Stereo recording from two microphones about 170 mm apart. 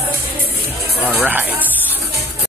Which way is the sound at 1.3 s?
10° right (ahead or behind).